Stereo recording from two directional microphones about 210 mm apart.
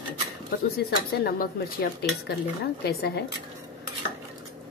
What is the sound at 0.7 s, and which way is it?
Speech, 45° left (ahead or behind).